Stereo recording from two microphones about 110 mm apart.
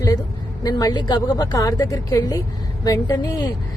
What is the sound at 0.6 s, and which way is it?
Speech, 35° left (ahead or behind).